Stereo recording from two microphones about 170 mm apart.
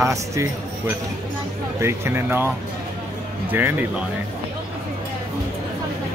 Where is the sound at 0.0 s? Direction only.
15° right (ahead or behind).